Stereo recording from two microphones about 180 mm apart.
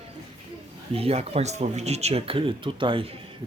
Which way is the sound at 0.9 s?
35° right (ahead or behind).